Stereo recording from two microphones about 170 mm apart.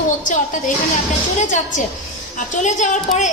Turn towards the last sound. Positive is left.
turn(degrees=45)  # may be behind; listen again after turning